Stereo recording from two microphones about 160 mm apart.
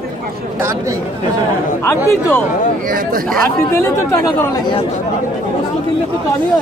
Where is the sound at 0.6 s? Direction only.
15° right (ahead or behind).